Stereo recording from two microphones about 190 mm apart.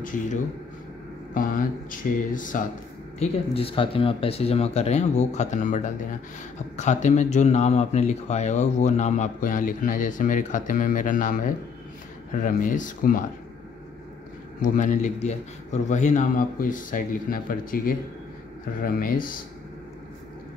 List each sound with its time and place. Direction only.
0.0 s speech: 45° left (ahead or behind)
3.2 s a man's voice: 30° left (ahead or behind)
14.6 s a man's voice: 40° left (ahead or behind)